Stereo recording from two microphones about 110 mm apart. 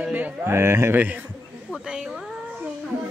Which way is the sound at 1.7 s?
5° right (ahead or behind).